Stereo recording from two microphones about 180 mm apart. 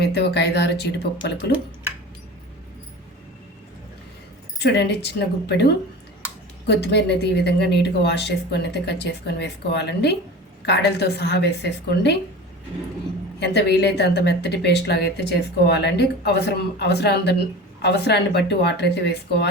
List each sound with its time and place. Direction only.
0.0 s a woman's voice: 70° left (ahead or behind)
4.6 s a woman's voice: 70° left (ahead or behind)
6.8 s a woman's voice: 70° left (ahead or behind)
13.4 s a woman's voice: 70° left (ahead or behind)